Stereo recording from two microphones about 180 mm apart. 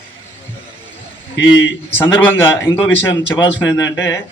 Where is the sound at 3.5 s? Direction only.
90° left.